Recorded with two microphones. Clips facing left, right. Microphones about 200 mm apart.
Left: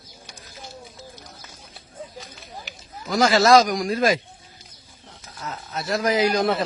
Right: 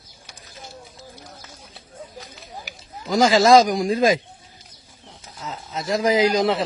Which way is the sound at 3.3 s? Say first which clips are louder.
Right 2 dB; 15° right (ahead or behind).